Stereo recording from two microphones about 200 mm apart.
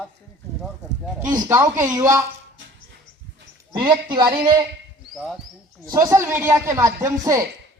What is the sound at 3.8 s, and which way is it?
Speech, 25° right (ahead or behind).